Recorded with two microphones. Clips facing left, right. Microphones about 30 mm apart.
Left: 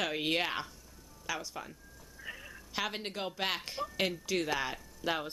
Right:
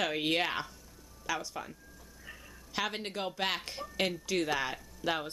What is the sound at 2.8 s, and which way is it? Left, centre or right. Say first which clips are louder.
Speech: right 1 dB; centre.